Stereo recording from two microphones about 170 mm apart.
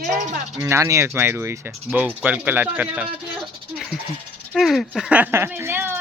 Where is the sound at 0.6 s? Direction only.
15° right (ahead or behind).